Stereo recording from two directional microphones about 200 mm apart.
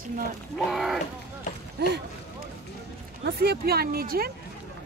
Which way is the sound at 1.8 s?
55° right (ahead or behind).